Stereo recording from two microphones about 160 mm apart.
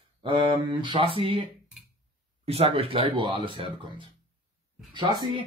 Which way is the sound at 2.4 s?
40° right (ahead or behind).